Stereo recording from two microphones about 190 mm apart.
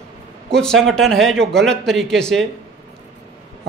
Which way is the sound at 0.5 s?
5° left (ahead or behind).